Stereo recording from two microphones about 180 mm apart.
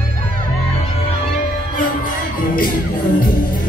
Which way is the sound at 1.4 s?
50° left (ahead or behind).